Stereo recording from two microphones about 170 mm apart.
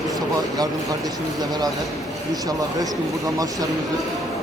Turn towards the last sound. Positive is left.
turn(degrees=-20)  # may be behind; listen again after turning